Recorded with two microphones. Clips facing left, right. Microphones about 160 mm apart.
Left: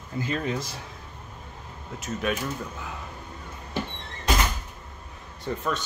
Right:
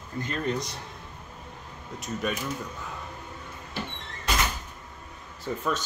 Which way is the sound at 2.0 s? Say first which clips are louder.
Left 2 dB; centre (ahead or behind).